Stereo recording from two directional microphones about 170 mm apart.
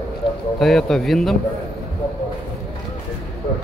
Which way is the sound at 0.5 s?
Centre (ahead or behind).